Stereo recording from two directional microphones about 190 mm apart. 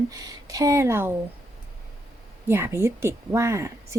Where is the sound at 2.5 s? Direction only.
10° right (ahead or behind).